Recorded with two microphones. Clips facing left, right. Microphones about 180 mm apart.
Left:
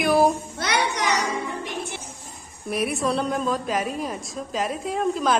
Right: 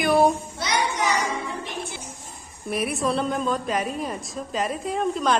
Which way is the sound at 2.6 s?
Centre (ahead or behind).